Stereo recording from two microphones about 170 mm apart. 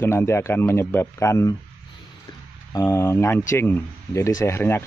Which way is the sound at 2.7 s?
15° left (ahead or behind).